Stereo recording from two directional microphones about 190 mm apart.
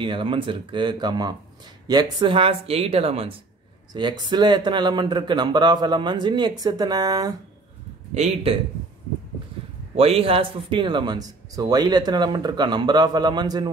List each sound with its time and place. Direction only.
0.0 s speech: 25° right (ahead or behind)
8.1 s speech: 35° right (ahead or behind)
9.9 s speech: 30° right (ahead or behind)